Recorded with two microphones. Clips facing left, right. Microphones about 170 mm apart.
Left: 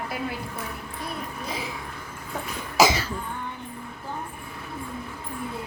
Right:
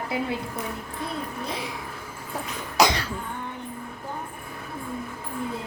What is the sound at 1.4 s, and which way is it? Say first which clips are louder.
Speech: right 1 dB; centre (ahead or behind).